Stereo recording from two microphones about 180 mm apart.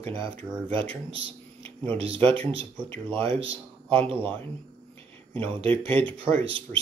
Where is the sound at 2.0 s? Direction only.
30° right (ahead or behind).